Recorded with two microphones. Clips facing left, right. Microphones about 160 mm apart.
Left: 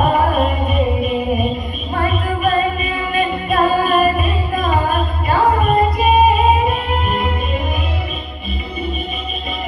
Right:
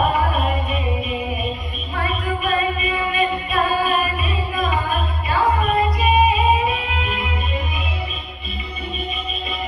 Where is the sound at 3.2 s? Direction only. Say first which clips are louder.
Left 6 dB; 50° left (ahead or behind).